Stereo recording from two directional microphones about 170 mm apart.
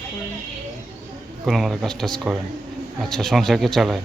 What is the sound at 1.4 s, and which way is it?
Speech, centre (ahead or behind).